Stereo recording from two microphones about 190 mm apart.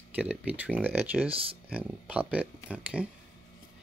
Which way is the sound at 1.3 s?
30° right (ahead or behind).